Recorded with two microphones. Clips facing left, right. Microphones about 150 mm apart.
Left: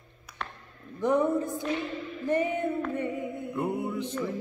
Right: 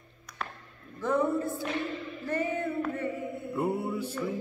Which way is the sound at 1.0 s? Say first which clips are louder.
Left 2 dB; 15° left (ahead or behind).